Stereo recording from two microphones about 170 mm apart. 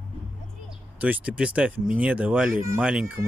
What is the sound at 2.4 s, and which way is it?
Speech, 55° right (ahead or behind).